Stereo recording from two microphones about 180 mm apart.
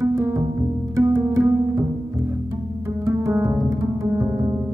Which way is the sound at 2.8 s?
15° right (ahead or behind).